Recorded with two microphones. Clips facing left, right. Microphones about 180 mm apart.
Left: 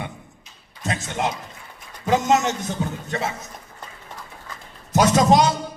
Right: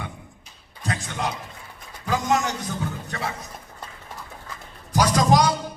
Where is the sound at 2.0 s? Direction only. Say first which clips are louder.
Left 4 dB; 20° left (ahead or behind).